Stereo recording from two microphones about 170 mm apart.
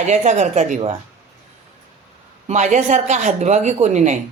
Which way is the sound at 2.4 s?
45° right (ahead or behind).